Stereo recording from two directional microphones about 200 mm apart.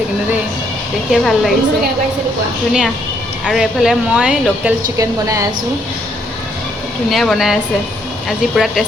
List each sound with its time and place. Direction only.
1.1 s a woman's voice: centre (ahead or behind)
3.4 s a woman's voice: centre (ahead or behind)
4.9 s a woman's voice: 15° right (ahead or behind)
7.1 s a woman's voice: centre (ahead or behind)